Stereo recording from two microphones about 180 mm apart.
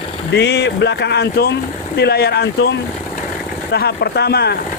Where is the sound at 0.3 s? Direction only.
70° left (ahead or behind).